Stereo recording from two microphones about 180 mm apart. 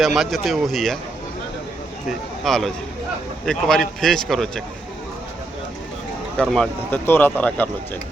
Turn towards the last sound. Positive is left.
turn(degrees=10)  # may be behind; listen again after turning